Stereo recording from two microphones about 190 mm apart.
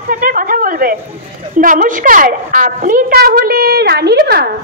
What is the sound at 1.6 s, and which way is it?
A woman's voice, 45° right (ahead or behind).